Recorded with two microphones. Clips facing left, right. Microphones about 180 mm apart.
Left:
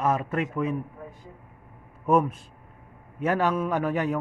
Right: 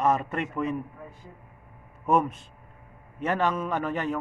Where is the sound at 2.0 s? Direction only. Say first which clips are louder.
Left 2 dB; 5° left (ahead or behind).